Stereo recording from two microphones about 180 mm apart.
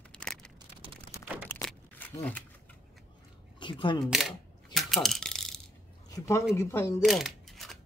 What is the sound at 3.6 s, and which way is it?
Camera, 25° left (ahead or behind).